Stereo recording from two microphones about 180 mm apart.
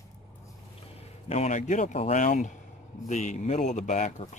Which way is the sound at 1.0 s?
35° left (ahead or behind).